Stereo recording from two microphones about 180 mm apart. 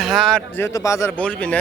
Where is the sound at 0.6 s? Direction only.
15° left (ahead or behind).